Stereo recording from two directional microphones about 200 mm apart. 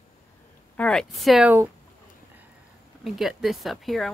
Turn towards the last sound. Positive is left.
turn(degrees=0)  # may be behind; listen again after turning